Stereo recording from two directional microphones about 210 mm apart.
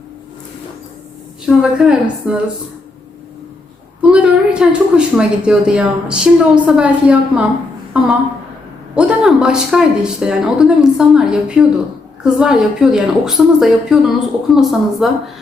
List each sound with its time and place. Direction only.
1.5 s a woman's voice: centre (ahead or behind)
4.0 s a woman's voice: 5° right (ahead or behind)
9.0 s a woman's voice: 5° right (ahead or behind)